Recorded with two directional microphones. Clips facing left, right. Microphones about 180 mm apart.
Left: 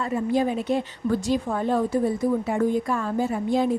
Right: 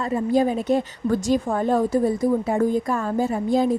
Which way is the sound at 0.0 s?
40° right (ahead or behind).